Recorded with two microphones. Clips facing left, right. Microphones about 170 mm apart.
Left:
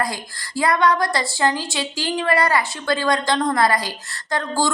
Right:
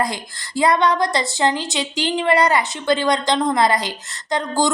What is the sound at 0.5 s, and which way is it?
A woman's voice, 20° right (ahead or behind).